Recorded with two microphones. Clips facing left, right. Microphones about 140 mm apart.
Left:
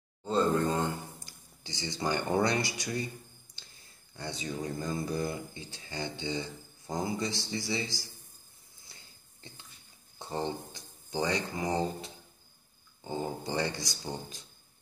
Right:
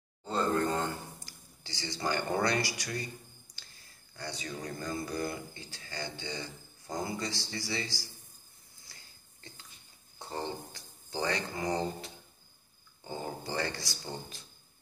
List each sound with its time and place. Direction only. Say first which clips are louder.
0.3 s speech: left 2 dB; 20° left (ahead or behind)
4.2 s speech: left 3 dB; 20° left (ahead or behind)
8.8 s a sound: left 1 dB; 20° left (ahead or behind)
10.1 s speech: left 3 dB; 20° left (ahead or behind)